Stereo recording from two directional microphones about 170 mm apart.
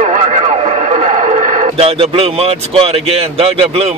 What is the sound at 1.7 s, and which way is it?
A man's voice, 35° right (ahead or behind).